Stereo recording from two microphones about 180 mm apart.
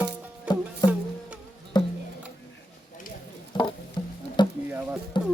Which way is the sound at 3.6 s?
25° left (ahead or behind).